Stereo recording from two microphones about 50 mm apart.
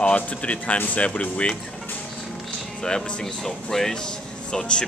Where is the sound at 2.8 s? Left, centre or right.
Centre.